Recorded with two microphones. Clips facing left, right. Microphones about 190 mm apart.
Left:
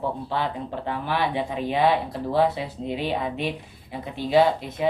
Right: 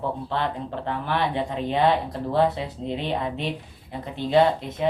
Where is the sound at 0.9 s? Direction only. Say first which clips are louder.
Even; 10° left (ahead or behind).